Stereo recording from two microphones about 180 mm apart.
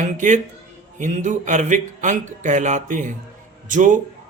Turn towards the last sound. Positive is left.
turn(degrees=-45)  # may be behind; listen again after turning